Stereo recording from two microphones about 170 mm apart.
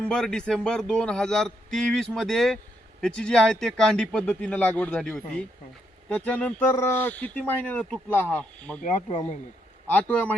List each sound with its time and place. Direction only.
0.0 s speech: 5° left (ahead or behind)
8.8 s speech: 45° left (ahead or behind)
9.8 s speech: 10° left (ahead or behind)